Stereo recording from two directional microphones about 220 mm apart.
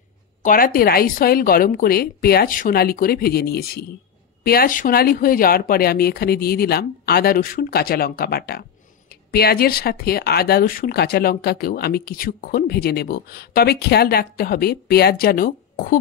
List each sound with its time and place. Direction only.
0.4 s speech: 40° left (ahead or behind)